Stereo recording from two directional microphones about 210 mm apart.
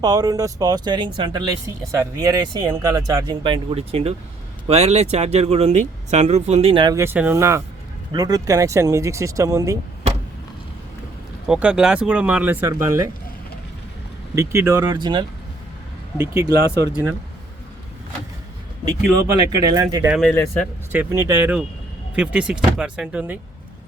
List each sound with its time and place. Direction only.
0.0 s speech: 15° right (ahead or behind)
11.4 s speech: 5° right (ahead or behind)
14.3 s speech: 15° right (ahead or behind)
19.5 s speech: 15° right (ahead or behind)
20.1 s speech: 10° left (ahead or behind)
20.9 s speech: 10° right (ahead or behind)